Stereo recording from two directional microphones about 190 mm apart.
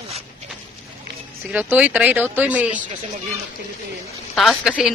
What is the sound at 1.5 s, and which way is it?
Speech, 10° right (ahead or behind).